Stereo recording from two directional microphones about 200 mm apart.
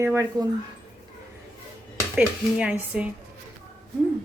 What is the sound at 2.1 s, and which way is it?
Speech, 5° right (ahead or behind).